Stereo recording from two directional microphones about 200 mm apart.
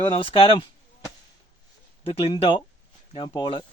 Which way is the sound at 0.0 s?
25° left (ahead or behind).